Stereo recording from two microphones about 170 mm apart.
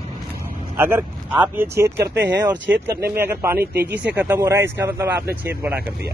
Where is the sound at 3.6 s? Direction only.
70° right (ahead or behind).